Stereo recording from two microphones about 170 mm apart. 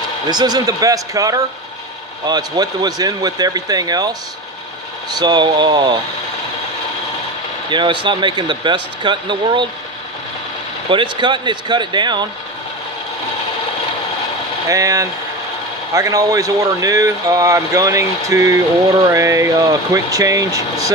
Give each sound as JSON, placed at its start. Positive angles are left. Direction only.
{"t": 0.3, "sound": "speech", "side_deg": -25}
{"t": 5.2, "sound": "speech", "side_deg": -25}
{"t": 7.7, "sound": "speech", "side_deg": -25}
{"t": 10.9, "sound": "speech", "side_deg": -30}
{"t": 14.7, "sound": "speech", "side_deg": -20}